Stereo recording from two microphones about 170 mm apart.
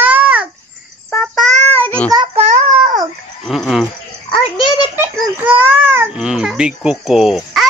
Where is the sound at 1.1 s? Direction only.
Centre (ahead or behind).